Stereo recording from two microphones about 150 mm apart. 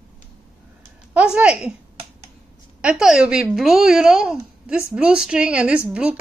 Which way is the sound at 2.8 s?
5° right (ahead or behind).